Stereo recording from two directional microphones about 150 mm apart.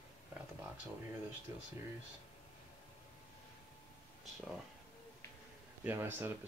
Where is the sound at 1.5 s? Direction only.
20° right (ahead or behind).